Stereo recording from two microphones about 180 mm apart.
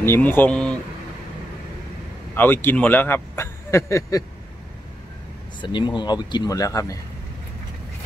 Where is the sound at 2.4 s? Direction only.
10° left (ahead or behind).